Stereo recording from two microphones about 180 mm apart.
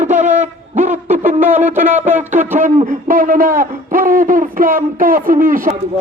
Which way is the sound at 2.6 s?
45° right (ahead or behind).